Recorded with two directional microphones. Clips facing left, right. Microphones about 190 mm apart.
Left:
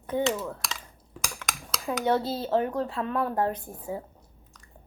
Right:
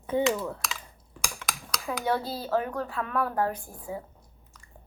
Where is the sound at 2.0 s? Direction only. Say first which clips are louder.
Left 3 dB; 25° left (ahead or behind).